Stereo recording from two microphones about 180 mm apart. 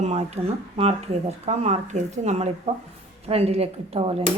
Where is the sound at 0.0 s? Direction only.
35° right (ahead or behind).